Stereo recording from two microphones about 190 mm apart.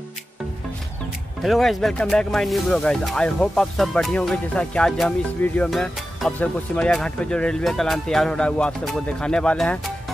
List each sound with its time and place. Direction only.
1.4 s speech: centre (ahead or behind)